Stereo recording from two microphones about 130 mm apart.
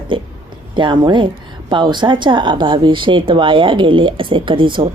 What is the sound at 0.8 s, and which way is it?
Speech, 35° right (ahead or behind).